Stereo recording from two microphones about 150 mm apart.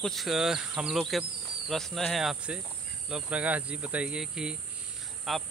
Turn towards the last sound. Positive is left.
turn(degrees=0)  # may be behind; listen again after turning